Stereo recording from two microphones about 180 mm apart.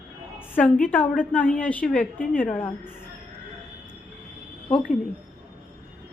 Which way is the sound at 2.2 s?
50° left (ahead or behind).